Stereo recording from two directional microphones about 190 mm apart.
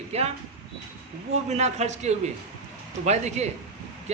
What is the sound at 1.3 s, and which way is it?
A man's voice, 35° right (ahead or behind).